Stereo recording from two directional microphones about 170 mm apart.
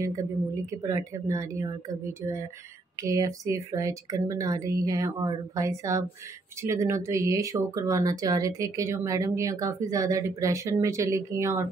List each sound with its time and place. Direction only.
0.0 s speech: 20° right (ahead or behind)